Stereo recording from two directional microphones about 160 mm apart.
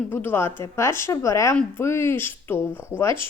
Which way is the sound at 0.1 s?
10° left (ahead or behind).